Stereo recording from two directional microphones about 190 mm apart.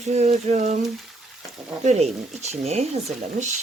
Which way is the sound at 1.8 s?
35° right (ahead or behind).